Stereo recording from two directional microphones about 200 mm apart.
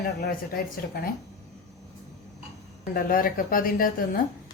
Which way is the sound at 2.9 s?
45° left (ahead or behind).